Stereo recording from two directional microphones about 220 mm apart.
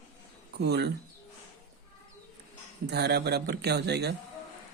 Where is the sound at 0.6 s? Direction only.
50° right (ahead or behind).